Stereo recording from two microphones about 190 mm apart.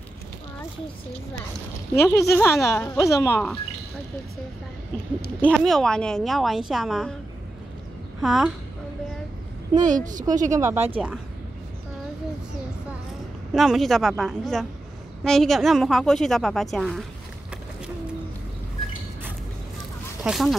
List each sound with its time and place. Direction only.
2.0 s a woman's voice: 15° left (ahead or behind)
5.4 s a woman's voice: centre (ahead or behind)
8.2 s a woman's voice: centre (ahead or behind)
9.8 s a woman's voice: 40° right (ahead or behind)
10.6 s speech: 10° right (ahead or behind)
13.5 s a woman's voice: centre (ahead or behind)
20.2 s a woman's voice: centre (ahead or behind)